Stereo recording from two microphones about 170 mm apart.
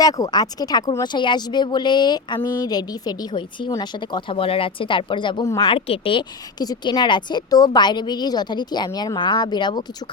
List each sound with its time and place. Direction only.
0.0 s speech: 20° left (ahead or behind)